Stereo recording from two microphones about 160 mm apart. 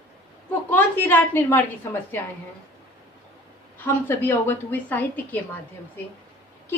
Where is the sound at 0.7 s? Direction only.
10° left (ahead or behind).